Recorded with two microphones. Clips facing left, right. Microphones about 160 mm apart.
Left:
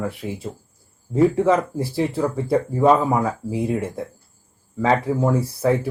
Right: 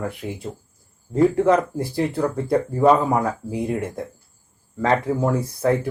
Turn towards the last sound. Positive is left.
turn(degrees=5)  # may be behind; listen again after turning